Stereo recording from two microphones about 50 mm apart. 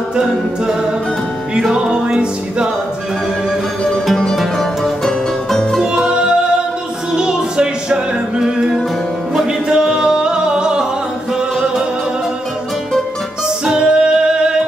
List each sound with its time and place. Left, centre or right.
0.1 s a capella: centre
1.7 s music: centre
4.6 s music: centre
5.9 s music: centre
13.7 s music: centre